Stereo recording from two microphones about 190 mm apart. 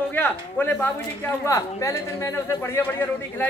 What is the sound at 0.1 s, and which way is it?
A man's voice, 10° left (ahead or behind).